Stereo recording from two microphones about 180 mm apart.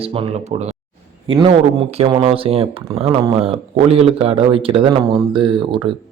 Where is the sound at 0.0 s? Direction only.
30° right (ahead or behind).